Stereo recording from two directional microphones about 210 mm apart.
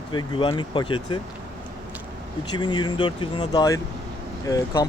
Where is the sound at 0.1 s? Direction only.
20° left (ahead or behind).